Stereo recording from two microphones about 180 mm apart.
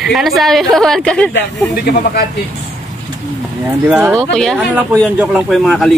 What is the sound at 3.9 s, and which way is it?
Speech, 10° right (ahead or behind).